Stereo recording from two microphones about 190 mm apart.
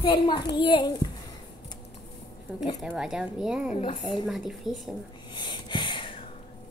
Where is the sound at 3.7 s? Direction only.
25° left (ahead or behind).